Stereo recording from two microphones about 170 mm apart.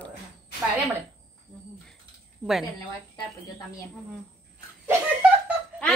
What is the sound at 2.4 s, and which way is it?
Speech, 5° right (ahead or behind).